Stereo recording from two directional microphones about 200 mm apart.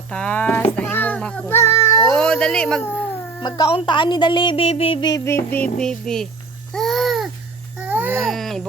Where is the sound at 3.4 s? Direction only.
20° left (ahead or behind); by 6.3 s 5° left (ahead or behind).